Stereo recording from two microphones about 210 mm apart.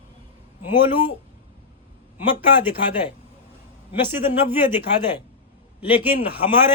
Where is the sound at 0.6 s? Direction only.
10° right (ahead or behind).